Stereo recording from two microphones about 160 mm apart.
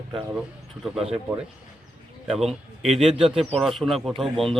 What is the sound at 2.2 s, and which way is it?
Speech, centre (ahead or behind).